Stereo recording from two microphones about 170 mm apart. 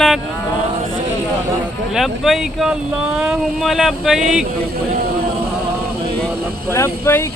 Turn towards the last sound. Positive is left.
turn(degrees=15)  # may be behind; listen again after turning